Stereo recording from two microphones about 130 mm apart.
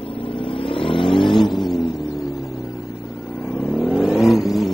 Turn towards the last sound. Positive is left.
turn(degrees=0)  # may be behind; listen again after turning